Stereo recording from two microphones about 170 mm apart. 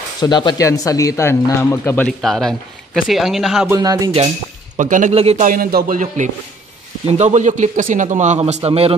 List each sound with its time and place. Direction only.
0.2 s speech: 25° left (ahead or behind)
2.0 s speech: centre (ahead or behind)
3.7 s music: 20° right (ahead or behind)
4.7 s a man's voice: 50° right (ahead or behind)
5.1 s speech: 35° right (ahead or behind)
5.5 s a man's voice: 60° right (ahead or behind); by 8.9 s 35° right (ahead or behind)